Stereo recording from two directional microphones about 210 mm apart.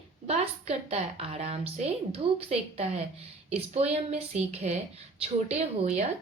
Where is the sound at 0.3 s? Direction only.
30° right (ahead or behind).